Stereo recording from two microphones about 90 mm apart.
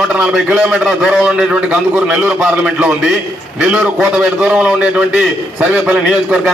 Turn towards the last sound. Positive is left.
turn(degrees=-10)  # may be behind; listen again after turning